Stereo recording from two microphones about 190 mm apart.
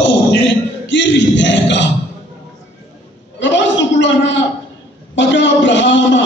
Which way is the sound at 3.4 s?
70° left (ahead or behind).